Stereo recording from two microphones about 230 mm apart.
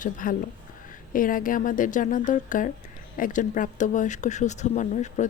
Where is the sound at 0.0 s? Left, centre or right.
Left.